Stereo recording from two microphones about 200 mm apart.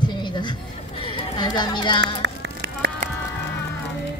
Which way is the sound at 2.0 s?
60° right (ahead or behind).